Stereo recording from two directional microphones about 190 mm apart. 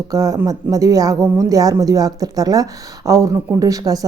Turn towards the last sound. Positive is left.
turn(degrees=-20)  # may be behind; listen again after turning